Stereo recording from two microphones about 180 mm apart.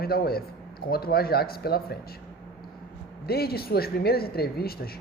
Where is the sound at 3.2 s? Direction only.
60° left (ahead or behind).